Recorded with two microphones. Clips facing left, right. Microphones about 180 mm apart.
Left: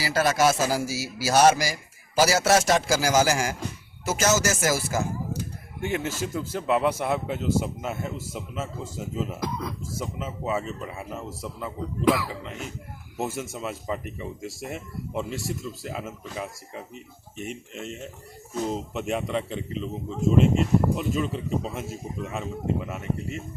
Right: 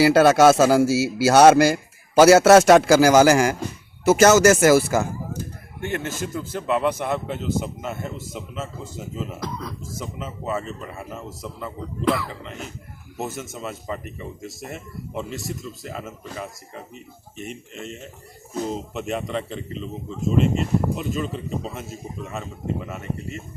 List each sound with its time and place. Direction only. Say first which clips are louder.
0.0 s speech: right 9 dB; 65° right (ahead or behind)
5.8 s speech: right 1 dB; 5° left (ahead or behind)
22.9 s speech: even; 5° left (ahead or behind)